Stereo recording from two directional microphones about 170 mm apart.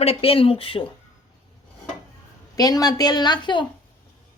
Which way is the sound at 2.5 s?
20° left (ahead or behind).